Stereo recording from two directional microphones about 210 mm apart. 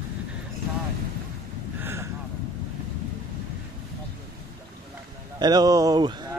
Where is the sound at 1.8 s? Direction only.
10° right (ahead or behind).